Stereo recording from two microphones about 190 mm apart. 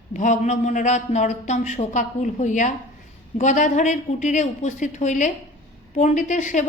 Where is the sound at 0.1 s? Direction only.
40° left (ahead or behind).